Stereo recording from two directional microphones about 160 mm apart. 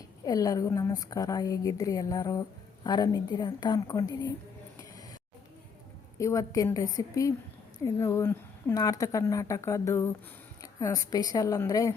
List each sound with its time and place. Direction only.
0.3 s a woman's voice: 20° left (ahead or behind)
6.1 s a woman's voice: 20° left (ahead or behind)